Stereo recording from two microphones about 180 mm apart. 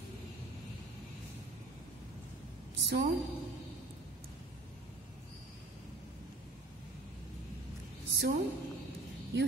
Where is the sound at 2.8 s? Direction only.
70° right (ahead or behind).